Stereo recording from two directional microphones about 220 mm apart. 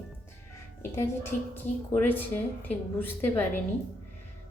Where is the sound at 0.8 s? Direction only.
10° left (ahead or behind).